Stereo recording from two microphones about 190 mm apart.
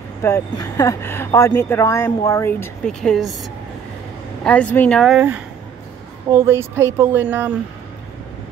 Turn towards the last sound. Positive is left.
turn(degrees=-10)  # may be behind; listen again after turning